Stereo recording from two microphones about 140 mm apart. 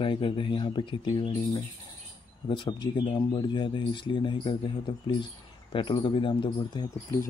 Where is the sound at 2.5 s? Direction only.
35° left (ahead or behind).